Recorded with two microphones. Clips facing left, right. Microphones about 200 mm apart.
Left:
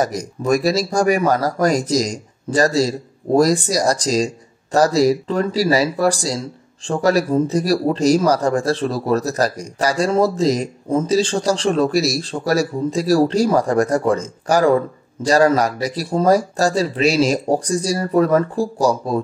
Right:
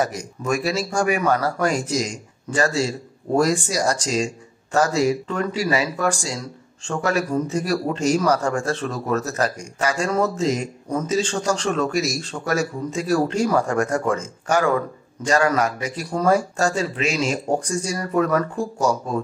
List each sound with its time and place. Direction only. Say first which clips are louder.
0.0 s speech: left 4 dB; 40° left (ahead or behind)